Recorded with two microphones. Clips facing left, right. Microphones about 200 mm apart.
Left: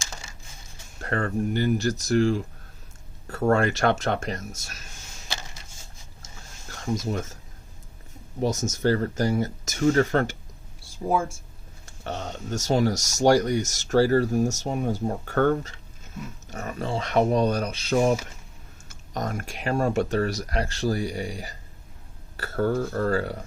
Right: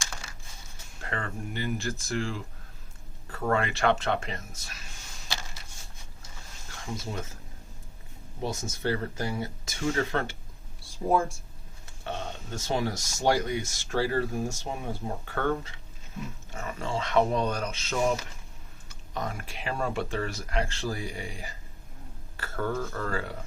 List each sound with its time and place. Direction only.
1.0 s speech: 45° left (ahead or behind)
6.2 s a sound: 45° left (ahead or behind)
8.4 s speech: 45° left (ahead or behind)
10.8 s speech: centre (ahead or behind)
11.9 s speech: 45° left (ahead or behind)